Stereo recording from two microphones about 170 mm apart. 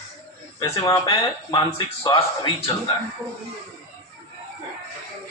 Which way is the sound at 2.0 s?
30° left (ahead or behind).